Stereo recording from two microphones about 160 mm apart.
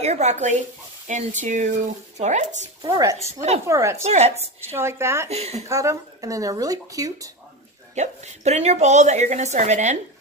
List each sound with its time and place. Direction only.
0.0 s a woman's voice: 45° right (ahead or behind)
2.8 s speech: 20° right (ahead or behind)
3.3 s a woman's voice: 40° right (ahead or behind)
3.6 s speech: 20° right (ahead or behind)
4.0 s a woman's voice: 40° right (ahead or behind)
4.7 s speech: 15° right (ahead or behind)
5.3 s a woman's voice: 40° right (ahead or behind)
5.7 s speech: 20° right (ahead or behind)
7.9 s a woman's voice: 45° right (ahead or behind)